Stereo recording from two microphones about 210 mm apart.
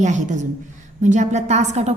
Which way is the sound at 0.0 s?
35° right (ahead or behind).